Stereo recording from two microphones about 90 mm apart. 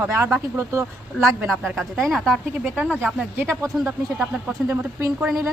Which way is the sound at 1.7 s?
Centre (ahead or behind).